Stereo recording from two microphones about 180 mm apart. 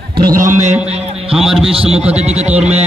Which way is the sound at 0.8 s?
35° right (ahead or behind).